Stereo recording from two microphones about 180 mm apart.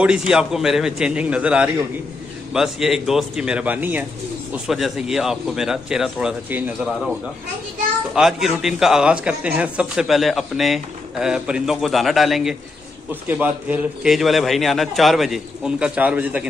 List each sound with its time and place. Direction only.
0.0 s a man's voice: 5° right (ahead or behind)
8.1 s a man's voice: centre (ahead or behind)